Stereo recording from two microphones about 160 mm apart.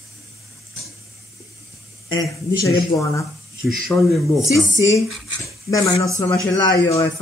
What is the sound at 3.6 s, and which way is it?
Speech, centre (ahead or behind).